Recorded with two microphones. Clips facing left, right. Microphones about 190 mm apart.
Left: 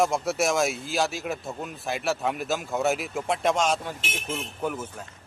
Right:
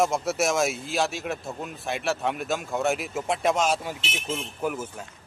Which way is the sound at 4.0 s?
50° left (ahead or behind).